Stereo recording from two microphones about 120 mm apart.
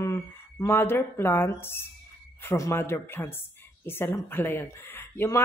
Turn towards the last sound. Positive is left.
turn(degrees=20)  # may be behind; listen again after turning